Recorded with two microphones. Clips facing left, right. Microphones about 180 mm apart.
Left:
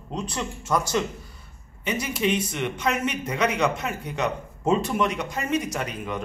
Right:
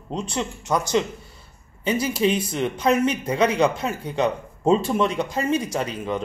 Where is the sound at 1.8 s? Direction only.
30° right (ahead or behind).